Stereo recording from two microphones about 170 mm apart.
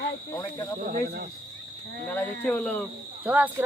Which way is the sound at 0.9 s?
65° right (ahead or behind).